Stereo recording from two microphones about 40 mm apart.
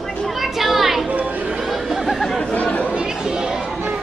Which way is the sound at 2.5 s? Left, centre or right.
Left.